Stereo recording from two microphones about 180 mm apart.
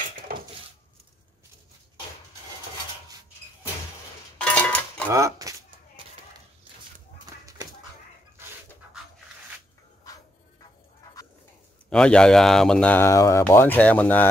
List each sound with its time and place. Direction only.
4.4 s a sound: 5° left (ahead or behind)
5.1 s speech: 15° right (ahead or behind)
11.9 s speech: 5° left (ahead or behind)